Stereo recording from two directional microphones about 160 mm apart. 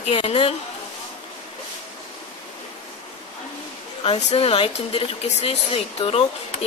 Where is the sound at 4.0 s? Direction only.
40° left (ahead or behind).